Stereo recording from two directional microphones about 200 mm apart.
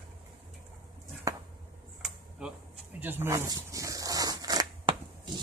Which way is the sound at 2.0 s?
5° right (ahead or behind).